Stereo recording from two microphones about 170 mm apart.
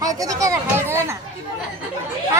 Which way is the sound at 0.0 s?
20° right (ahead or behind).